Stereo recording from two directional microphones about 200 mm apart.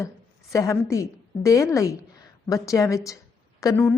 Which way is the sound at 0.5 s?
15° left (ahead or behind).